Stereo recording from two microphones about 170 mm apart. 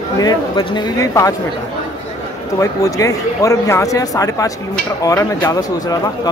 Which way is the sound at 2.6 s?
20° left (ahead or behind).